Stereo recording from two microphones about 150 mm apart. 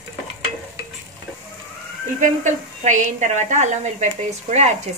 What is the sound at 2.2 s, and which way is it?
A woman's voice, 55° right (ahead or behind).